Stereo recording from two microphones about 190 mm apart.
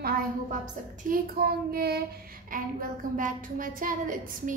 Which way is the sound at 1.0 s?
50° right (ahead or behind).